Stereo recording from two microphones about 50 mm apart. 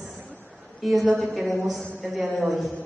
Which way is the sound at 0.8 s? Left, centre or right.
Centre.